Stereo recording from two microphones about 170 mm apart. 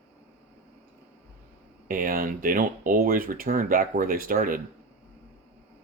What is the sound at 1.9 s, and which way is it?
Speech, 55° right (ahead or behind).